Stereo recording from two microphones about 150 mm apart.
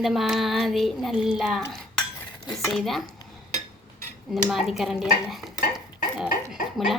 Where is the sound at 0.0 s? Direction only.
Centre (ahead or behind).